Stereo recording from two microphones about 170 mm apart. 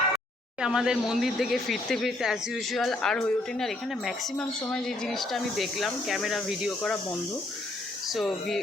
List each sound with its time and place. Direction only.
0.6 s speech: 5° right (ahead or behind)
8.1 s speech: centre (ahead or behind)